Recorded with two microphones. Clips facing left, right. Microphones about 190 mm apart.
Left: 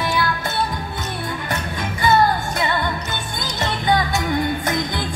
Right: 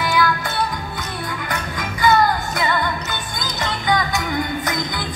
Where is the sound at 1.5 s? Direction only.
25° left (ahead or behind).